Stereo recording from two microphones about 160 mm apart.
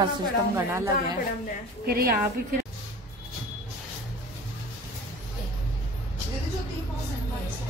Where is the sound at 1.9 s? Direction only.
70° right (ahead or behind).